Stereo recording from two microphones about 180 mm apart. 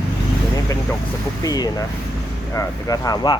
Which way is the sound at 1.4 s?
20° left (ahead or behind).